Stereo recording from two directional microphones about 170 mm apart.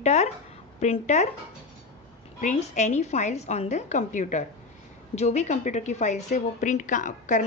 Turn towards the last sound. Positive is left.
turn(degrees=50)  # may be behind; listen again after turning